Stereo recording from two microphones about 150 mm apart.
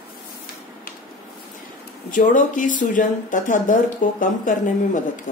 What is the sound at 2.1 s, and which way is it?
Speech, 60° left (ahead or behind).